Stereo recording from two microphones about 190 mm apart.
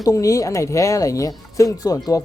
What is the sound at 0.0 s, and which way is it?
Speech, 15° left (ahead or behind).